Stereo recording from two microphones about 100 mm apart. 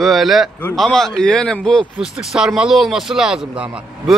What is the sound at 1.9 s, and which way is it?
A man's voice, 5° right (ahead or behind).